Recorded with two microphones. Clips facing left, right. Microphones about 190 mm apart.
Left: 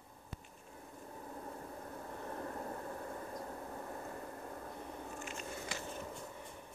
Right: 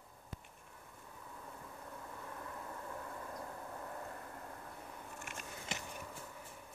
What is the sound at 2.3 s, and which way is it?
Vehicle, 45° left (ahead or behind).